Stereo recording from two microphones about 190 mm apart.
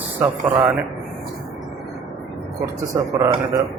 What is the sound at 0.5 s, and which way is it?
Speech, 20° right (ahead or behind).